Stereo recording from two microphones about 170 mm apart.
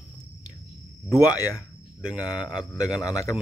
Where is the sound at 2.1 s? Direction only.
20° left (ahead or behind).